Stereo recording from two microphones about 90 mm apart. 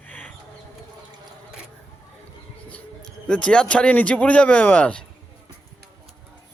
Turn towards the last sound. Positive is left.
turn(degrees=15)  # may be behind; listen again after turning